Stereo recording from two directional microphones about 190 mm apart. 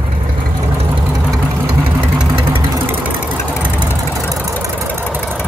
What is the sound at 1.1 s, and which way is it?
Vehicle, centre (ahead or behind).